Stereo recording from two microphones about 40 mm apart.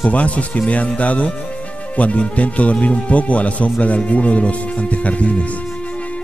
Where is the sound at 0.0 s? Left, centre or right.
Left.